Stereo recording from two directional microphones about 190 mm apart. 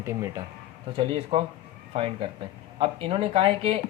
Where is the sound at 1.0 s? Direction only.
30° right (ahead or behind).